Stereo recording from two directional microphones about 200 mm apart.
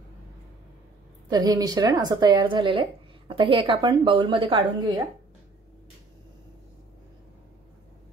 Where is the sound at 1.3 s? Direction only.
20° right (ahead or behind).